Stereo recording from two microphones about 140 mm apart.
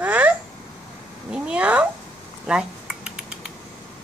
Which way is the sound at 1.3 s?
10° right (ahead or behind).